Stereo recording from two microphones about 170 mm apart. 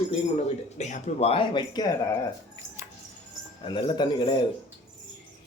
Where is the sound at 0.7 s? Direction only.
45° left (ahead or behind).